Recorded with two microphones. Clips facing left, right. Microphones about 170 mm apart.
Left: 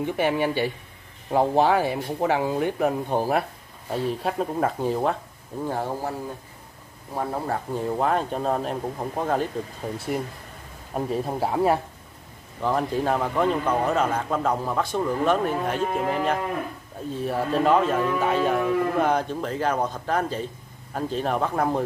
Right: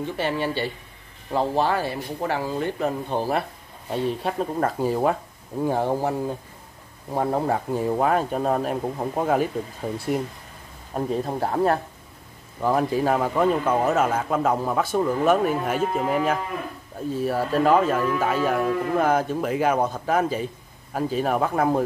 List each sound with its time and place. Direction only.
0.0 s a man's voice: 15° left (ahead or behind); by 5.1 s 5° right (ahead or behind)
5.6 s speech: 20° right (ahead or behind)
7.2 s speech: 25° right (ahead or behind)
7.7 s a man's voice: 5° right (ahead or behind)
12.6 s a man's voice: 5° right (ahead or behind)